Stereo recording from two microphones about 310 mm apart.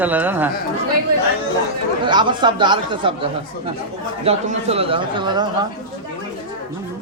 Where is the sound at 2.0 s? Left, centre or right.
Centre.